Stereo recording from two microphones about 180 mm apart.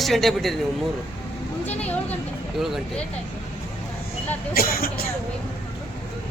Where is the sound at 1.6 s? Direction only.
10° left (ahead or behind).